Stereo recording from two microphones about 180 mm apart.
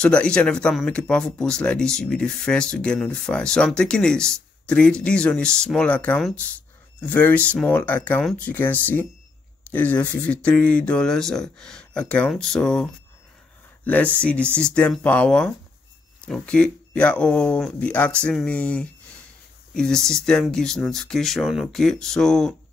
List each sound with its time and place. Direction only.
0.0 s speech: 5° left (ahead or behind)
13.8 s speech: 5° left (ahead or behind)